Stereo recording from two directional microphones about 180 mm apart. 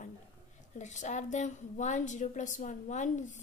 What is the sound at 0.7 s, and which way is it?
A woman's voice, 40° left (ahead or behind).